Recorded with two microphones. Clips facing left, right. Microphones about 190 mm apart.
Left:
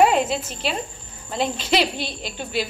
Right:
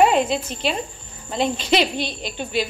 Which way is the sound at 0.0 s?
5° left (ahead or behind).